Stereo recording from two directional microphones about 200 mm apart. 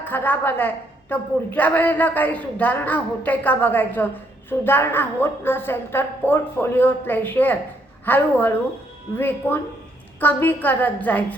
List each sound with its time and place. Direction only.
0.0 s a man's voice: 10° left (ahead or behind)